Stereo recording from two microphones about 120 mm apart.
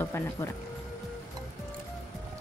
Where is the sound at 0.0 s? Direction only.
20° left (ahead or behind).